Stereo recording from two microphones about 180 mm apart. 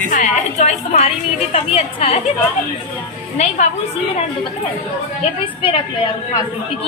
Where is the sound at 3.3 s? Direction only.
40° left (ahead or behind).